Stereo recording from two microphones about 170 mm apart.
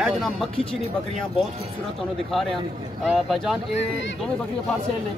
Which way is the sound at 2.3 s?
Centre (ahead or behind).